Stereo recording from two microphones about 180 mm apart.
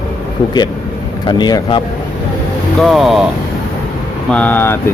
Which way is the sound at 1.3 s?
25° left (ahead or behind).